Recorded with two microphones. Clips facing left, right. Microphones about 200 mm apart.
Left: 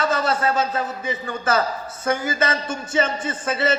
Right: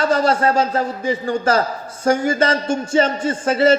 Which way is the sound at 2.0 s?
25° right (ahead or behind).